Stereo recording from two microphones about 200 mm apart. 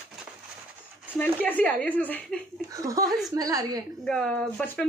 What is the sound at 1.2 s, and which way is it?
Speech, 10° left (ahead or behind).